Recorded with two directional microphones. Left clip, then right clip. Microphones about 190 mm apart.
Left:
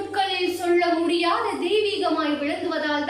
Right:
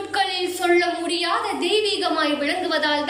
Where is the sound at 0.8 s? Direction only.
15° left (ahead or behind).